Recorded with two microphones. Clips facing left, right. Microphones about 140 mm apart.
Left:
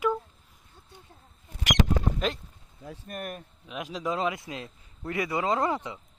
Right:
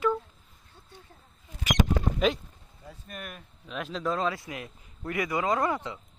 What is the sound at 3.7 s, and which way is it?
A man's voice, 10° left (ahead or behind).